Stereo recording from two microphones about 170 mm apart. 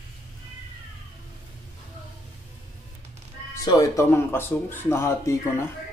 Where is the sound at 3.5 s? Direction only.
20° left (ahead or behind).